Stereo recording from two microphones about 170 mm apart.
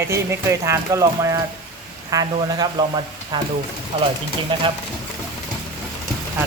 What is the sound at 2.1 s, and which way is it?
Speech, 20° right (ahead or behind).